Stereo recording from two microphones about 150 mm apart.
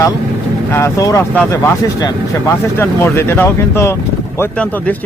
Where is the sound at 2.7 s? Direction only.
15° left (ahead or behind).